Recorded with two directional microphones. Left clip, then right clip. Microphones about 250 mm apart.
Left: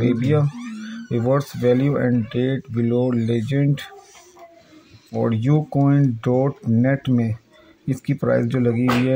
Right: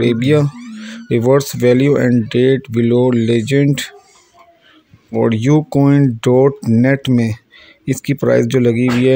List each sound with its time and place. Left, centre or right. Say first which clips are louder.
0.0 s speech: right 7 dB; right
5.1 s speech: right 8 dB; right